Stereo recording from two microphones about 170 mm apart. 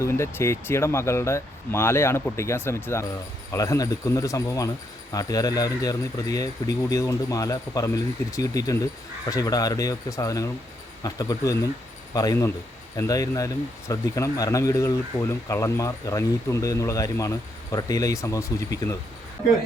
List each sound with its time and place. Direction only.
0.0 s speech: 15° left (ahead or behind)